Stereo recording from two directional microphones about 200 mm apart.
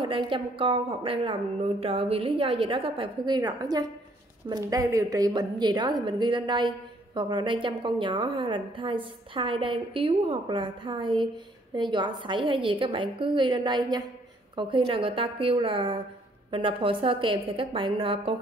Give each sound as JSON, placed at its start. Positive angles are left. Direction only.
{"t": 0.0, "sound": "a woman's voice", "side_deg": -25}